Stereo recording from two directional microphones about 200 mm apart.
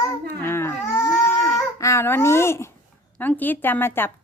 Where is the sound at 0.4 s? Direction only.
10° left (ahead or behind).